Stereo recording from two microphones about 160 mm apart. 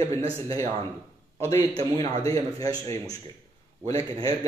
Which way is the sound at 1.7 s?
35° right (ahead or behind).